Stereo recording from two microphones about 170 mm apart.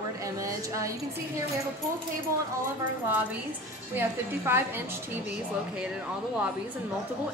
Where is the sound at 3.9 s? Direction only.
15° right (ahead or behind).